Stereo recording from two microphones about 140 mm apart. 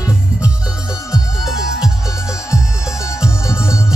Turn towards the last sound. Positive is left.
turn(degrees=20)  # may be behind; listen again after turning